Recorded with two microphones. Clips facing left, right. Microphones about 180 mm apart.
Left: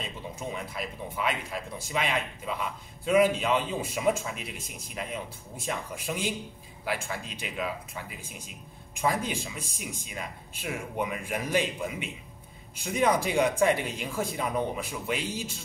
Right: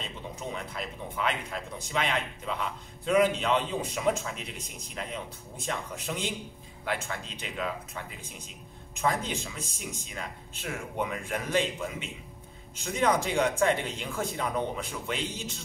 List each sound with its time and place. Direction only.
0.0 s speech: 10° left (ahead or behind)